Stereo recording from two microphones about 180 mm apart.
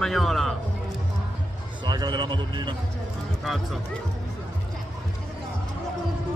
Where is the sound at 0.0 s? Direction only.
Centre (ahead or behind).